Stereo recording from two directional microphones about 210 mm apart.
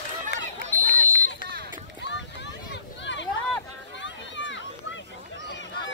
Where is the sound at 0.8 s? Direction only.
40° right (ahead or behind).